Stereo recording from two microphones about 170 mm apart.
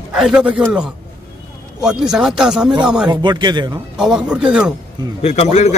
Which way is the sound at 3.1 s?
25° right (ahead or behind).